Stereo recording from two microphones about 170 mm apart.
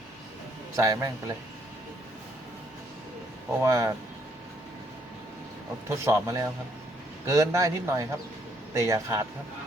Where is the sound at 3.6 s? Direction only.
20° right (ahead or behind).